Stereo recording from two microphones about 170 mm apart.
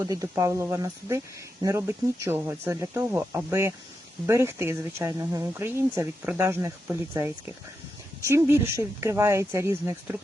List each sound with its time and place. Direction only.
0.0 s speech: 20° right (ahead or behind)